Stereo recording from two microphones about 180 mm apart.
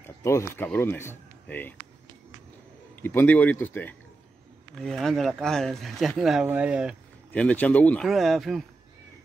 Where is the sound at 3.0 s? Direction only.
10° left (ahead or behind); by 7.0 s 5° right (ahead or behind).